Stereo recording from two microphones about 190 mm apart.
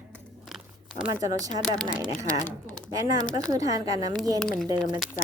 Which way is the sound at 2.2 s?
40° left (ahead or behind).